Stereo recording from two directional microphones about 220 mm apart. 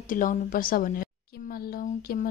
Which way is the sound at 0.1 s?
35° left (ahead or behind).